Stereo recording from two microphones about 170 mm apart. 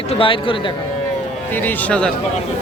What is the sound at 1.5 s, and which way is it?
Speech, 10° left (ahead or behind).